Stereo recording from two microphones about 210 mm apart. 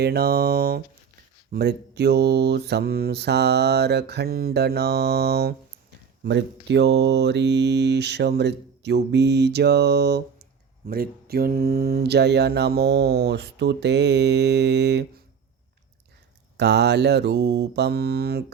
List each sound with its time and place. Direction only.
0.0 s mantra: 50° right (ahead or behind)
16.6 s mantra: 55° right (ahead or behind)